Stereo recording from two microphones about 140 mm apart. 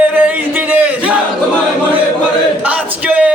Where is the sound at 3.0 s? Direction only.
10° right (ahead or behind).